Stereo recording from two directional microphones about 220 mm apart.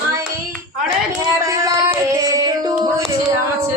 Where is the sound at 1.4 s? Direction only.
15° right (ahead or behind).